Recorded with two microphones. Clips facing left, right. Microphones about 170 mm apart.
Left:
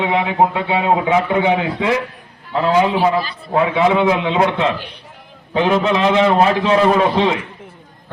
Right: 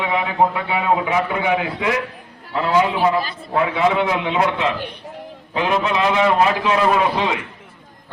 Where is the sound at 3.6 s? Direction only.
20° left (ahead or behind).